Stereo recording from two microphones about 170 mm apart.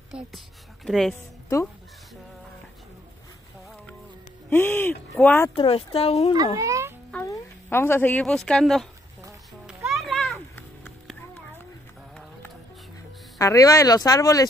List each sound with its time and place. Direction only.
0.1 s speech: 5° right (ahead or behind)
4.5 s speech: 10° left (ahead or behind)
5.6 s speech: 30° left (ahead or behind)
6.6 s a sound: 20° right (ahead or behind)
7.2 s a sound: 15° left (ahead or behind)
8.5 s speech: 5° left (ahead or behind)
9.7 s children playing: centre (ahead or behind)
13.4 s speech: 20° left (ahead or behind)